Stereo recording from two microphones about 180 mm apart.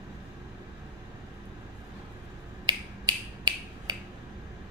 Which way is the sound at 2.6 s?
25° right (ahead or behind).